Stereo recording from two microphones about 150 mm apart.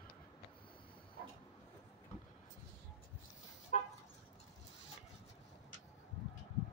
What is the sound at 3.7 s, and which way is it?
Vehicle, 50° left (ahead or behind).